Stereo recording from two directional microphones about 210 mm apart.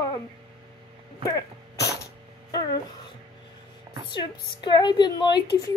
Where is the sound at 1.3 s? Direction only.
15° left (ahead or behind).